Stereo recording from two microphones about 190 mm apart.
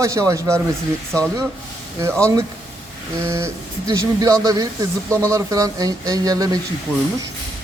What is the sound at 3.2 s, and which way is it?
Speech, 15° right (ahead or behind).